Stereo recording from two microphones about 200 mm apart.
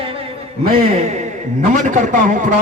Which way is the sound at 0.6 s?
40° right (ahead or behind).